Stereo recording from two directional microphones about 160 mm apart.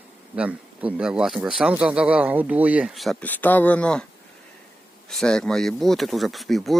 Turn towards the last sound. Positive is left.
turn(degrees=0)  # may be behind; listen again after turning